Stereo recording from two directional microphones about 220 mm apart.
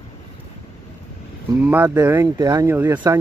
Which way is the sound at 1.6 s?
10° right (ahead or behind).